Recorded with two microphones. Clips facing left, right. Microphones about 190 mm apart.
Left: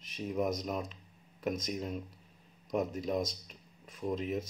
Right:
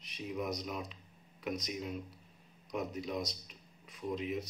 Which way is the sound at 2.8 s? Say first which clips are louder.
Left 5 dB; 45° left (ahead or behind).